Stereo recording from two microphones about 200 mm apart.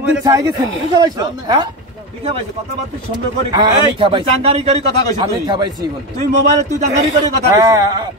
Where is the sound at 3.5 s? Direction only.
25° right (ahead or behind).